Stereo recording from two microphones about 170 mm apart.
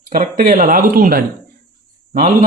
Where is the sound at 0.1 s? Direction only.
55° right (ahead or behind).